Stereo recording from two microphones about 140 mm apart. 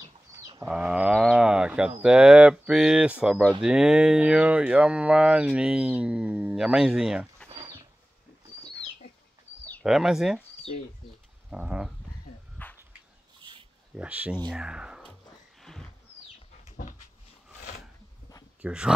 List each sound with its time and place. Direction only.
0.7 s a sound: 5° right (ahead or behind)
2.0 s speech: 5° right (ahead or behind)
9.8 s speech: 5° right (ahead or behind)
11.5 s speech: 5° right (ahead or behind)
12.6 s dog: 10° left (ahead or behind)
13.4 s a sound: 35° right (ahead or behind)
13.9 s speech: 10° right (ahead or behind)
15.6 s a sound: 5° left (ahead or behind)
17.6 s filing: 65° left (ahead or behind)
18.6 s speech: 5° right (ahead or behind)